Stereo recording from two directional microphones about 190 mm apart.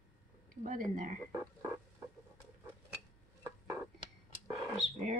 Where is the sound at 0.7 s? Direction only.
45° right (ahead or behind).